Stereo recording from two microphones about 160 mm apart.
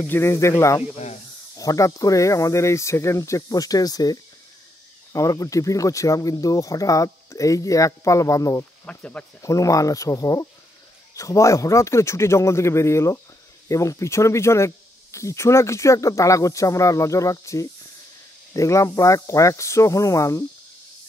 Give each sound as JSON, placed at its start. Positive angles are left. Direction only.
{"t": 0.0, "sound": "speech", "side_deg": 15}
{"t": 0.9, "sound": "speech", "side_deg": 45}
{"t": 1.6, "sound": "speech", "side_deg": 20}
{"t": 8.8, "sound": "speech", "side_deg": 10}
{"t": 9.4, "sound": "speech", "side_deg": 20}